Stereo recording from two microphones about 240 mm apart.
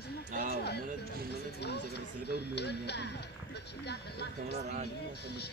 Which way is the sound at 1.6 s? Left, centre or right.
Left.